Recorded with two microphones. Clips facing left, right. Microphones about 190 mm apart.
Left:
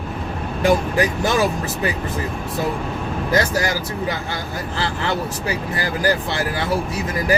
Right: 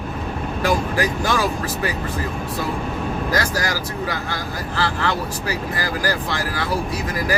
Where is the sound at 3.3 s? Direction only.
20° left (ahead or behind).